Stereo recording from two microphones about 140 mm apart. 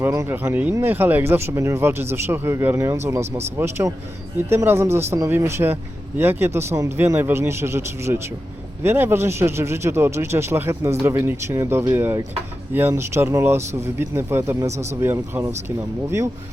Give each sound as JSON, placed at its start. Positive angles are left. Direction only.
{"t": 0.0, "sound": "speech", "side_deg": -20}